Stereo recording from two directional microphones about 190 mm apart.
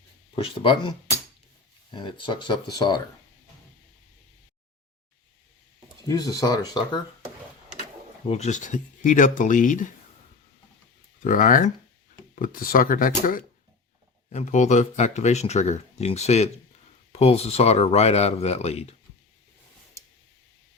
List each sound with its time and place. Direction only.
0.3 s speech: 30° left (ahead or behind)
6.1 s speech: 20° left (ahead or behind)
8.3 s speech: 40° left (ahead or behind)
11.2 s speech: 45° left (ahead or behind)